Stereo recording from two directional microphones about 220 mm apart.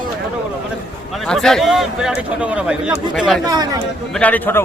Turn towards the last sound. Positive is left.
turn(degrees=10)  # may be behind; listen again after turning